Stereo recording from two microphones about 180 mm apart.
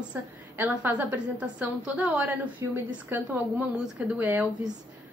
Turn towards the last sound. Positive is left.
turn(degrees=-10)  # may be behind; listen again after turning